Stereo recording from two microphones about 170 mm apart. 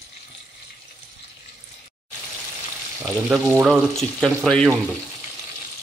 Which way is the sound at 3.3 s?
15° right (ahead or behind).